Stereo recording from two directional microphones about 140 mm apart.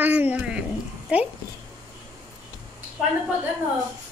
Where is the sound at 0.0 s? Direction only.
10° right (ahead or behind).